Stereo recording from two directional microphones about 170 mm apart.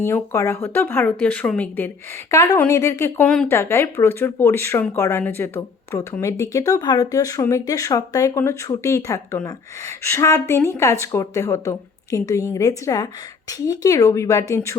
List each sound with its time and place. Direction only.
0.0 s speech: 15° left (ahead or behind)